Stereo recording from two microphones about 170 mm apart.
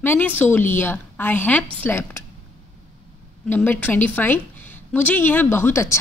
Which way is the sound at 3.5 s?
10° left (ahead or behind).